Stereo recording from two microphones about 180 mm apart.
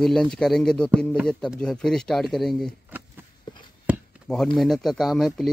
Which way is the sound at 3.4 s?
25° left (ahead or behind).